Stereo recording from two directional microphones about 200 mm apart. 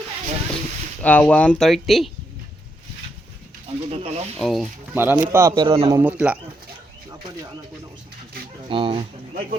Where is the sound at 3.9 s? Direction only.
30° right (ahead or behind).